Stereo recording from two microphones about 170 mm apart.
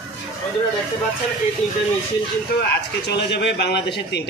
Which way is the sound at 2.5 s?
85° left.